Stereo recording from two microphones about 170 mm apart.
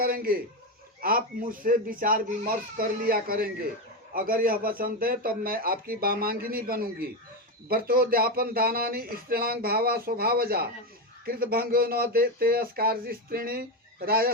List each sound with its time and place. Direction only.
0.0 s a man's voice: 60° right (ahead or behind)